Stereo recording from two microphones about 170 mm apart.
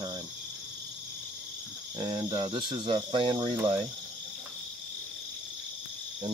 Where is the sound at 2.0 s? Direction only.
25° right (ahead or behind).